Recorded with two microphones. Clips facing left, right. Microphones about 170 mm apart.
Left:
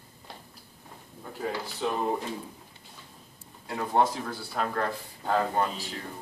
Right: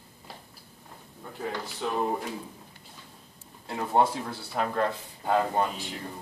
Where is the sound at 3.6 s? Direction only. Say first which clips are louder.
Right 1 dB; 20° right (ahead or behind).